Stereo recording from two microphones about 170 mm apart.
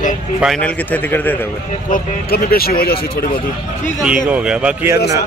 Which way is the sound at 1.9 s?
60° left (ahead or behind).